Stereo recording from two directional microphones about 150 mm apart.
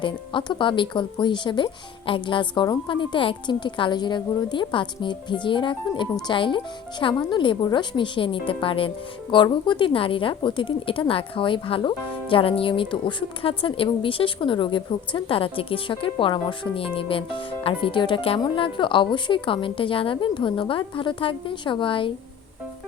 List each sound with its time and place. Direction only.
0.0 s a woman's voice: 35° left (ahead or behind)